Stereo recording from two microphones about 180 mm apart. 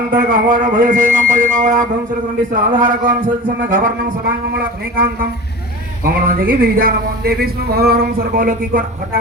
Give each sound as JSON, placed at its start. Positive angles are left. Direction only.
{"t": 0.1, "sound": "speech", "side_deg": -50}
{"t": 6.1, "sound": "speech", "side_deg": -55}